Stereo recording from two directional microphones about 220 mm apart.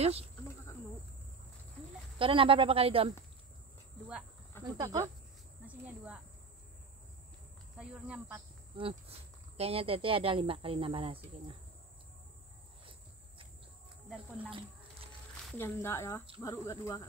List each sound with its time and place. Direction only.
0.0 s speech: 30° right (ahead or behind)
2.1 s speech: 25° right (ahead or behind)
4.7 s speech: 15° right (ahead or behind)
7.7 s speech: 5° right (ahead or behind)
8.7 s speech: 25° right (ahead or behind)
14.0 s speech: 5° right (ahead or behind)
15.4 s speech: 10° left (ahead or behind)